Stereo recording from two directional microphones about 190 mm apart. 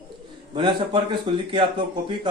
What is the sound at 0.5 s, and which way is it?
A man's voice, 25° right (ahead or behind).